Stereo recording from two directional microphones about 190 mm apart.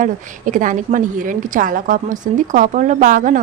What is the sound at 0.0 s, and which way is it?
A woman's voice, 45° right (ahead or behind).